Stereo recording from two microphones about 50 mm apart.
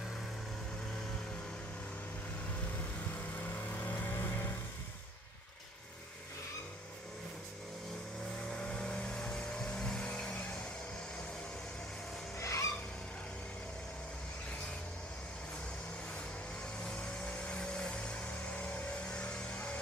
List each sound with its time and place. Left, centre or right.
3.7 s vehicle: left
8.5 s vehicle: centre
12.4 s vehicle: left
16.8 s vehicle: left
19.0 s vehicle: centre